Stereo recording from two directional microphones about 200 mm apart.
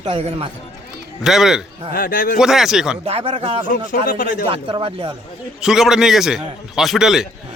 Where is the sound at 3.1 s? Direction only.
30° right (ahead or behind).